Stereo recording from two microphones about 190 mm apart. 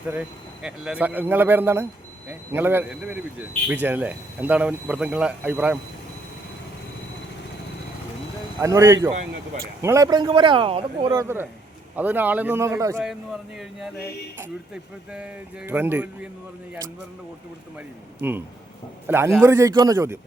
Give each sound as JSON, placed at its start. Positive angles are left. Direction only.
{"t": 0.1, "sound": "speech", "side_deg": -5}
{"t": 8.6, "sound": "speech", "side_deg": -15}
{"t": 11.2, "sound": "speech", "side_deg": -10}
{"t": 14.3, "sound": "speech", "side_deg": -10}
{"t": 18.2, "sound": "speech", "side_deg": -10}